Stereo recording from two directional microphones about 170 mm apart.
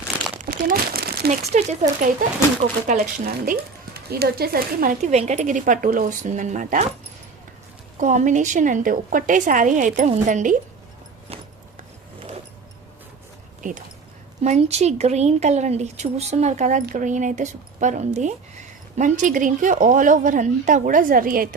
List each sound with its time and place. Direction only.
0.3 s crumpling: 55° right (ahead or behind)
1.5 s a woman's voice: 45° right (ahead or behind)
5.1 s a woman's voice: 40° right (ahead or behind)
7.9 s a woman's voice: 45° right (ahead or behind)
13.6 s speech: 50° right (ahead or behind)
14.4 s a woman's voice: 40° right (ahead or behind); by 21.5 s 55° right (ahead or behind)